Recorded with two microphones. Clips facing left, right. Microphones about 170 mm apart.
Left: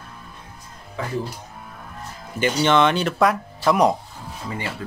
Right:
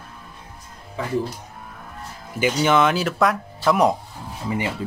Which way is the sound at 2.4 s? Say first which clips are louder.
Even; 5° right (ahead or behind).